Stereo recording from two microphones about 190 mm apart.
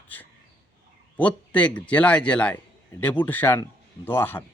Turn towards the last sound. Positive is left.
turn(degrees=10)  # may be behind; listen again after turning